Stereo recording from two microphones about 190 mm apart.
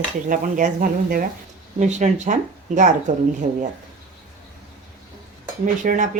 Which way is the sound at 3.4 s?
25° right (ahead or behind).